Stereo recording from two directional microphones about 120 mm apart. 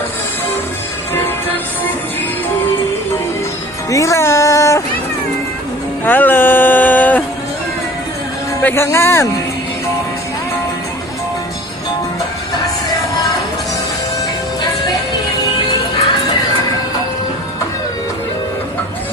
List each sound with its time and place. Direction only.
3.8 s music: 25° left (ahead or behind)
6.1 s a sound: 15° left (ahead or behind)
8.6 s speech: 20° left (ahead or behind)